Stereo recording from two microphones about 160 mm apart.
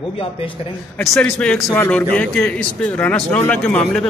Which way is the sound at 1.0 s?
5° left (ahead or behind).